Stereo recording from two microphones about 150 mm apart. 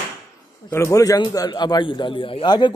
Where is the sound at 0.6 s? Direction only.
20° left (ahead or behind).